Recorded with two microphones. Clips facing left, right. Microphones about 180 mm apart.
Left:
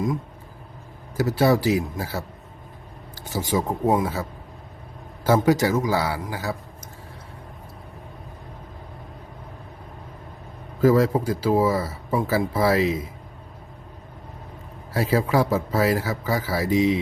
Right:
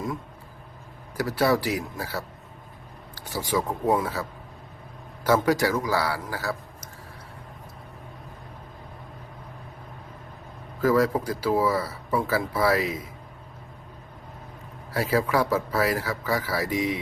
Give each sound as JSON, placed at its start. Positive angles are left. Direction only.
{"t": 1.1, "sound": "speech", "side_deg": 25}
{"t": 3.2, "sound": "speech", "side_deg": 25}
{"t": 10.8, "sound": "speech", "side_deg": 25}
{"t": 14.9, "sound": "speech", "side_deg": 25}